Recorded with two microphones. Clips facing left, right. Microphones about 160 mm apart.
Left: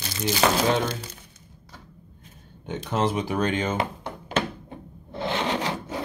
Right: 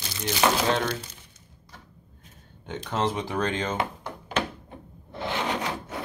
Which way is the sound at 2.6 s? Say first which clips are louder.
Left 2 dB; 15° left (ahead or behind).